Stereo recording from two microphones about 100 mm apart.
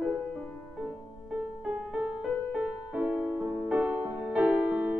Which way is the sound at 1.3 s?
5° right (ahead or behind).